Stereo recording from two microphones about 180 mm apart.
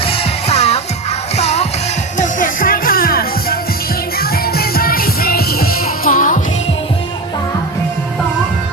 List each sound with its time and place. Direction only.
0.0 s music: 30° left (ahead or behind)
2.1 s music: 45° left (ahead or behind)